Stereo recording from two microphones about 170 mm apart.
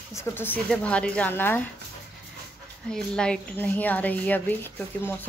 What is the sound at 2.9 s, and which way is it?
Speech, 5° left (ahead or behind).